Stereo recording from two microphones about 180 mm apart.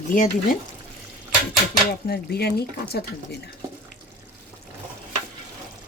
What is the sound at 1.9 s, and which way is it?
Speech, 60° left (ahead or behind).